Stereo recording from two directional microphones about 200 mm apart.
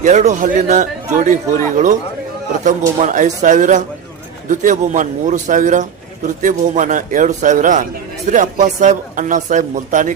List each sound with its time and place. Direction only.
0.0 s a man's voice: 35° right (ahead or behind)
3.0 s a man's voice: 40° right (ahead or behind)